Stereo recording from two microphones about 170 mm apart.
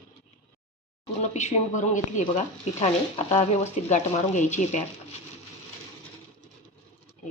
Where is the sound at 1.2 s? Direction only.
40° left (ahead or behind).